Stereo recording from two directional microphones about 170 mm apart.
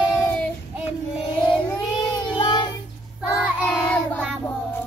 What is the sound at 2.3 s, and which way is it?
Child singing, 25° left (ahead or behind).